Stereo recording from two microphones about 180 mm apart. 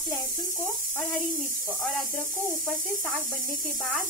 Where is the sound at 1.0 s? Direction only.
10° left (ahead or behind).